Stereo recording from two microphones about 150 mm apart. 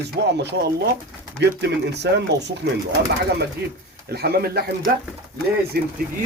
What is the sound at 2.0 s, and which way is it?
Speech, 90° right.